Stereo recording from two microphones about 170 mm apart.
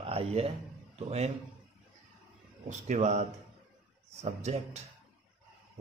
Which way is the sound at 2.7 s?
45° right (ahead or behind).